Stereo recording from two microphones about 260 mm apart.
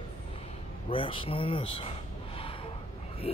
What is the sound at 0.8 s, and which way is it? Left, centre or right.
Speech, left.